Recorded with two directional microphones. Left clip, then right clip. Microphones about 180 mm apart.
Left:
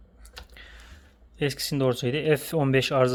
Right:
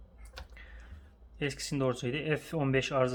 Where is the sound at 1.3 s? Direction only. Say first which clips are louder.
Left 7 dB; 25° left (ahead or behind).